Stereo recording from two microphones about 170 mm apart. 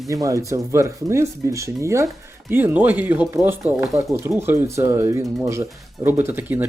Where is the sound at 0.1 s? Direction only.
20° right (ahead or behind).